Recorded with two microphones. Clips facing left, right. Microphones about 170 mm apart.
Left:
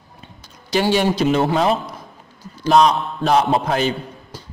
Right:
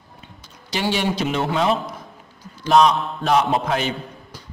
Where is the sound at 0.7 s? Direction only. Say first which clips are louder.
Left 5 dB; 40° left (ahead or behind).